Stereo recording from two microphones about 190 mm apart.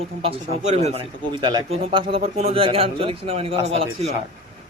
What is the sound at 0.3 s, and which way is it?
A man's voice, 35° right (ahead or behind).